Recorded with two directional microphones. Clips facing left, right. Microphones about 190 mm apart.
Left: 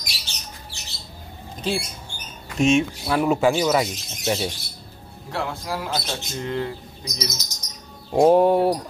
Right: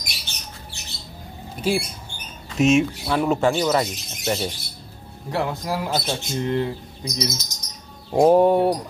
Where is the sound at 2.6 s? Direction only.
5° right (ahead or behind).